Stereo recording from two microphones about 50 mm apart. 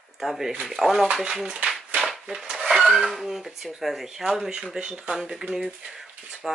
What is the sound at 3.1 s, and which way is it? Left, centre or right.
Speech, centre.